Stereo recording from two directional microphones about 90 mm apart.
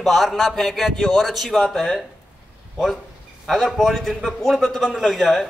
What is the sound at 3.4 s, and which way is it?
A man's voice, centre (ahead or behind).